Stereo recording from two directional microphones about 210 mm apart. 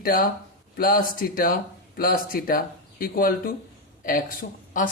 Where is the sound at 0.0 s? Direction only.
40° left (ahead or behind).